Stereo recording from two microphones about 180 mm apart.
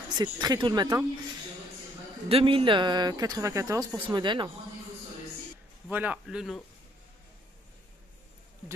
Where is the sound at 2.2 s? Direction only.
30° right (ahead or behind).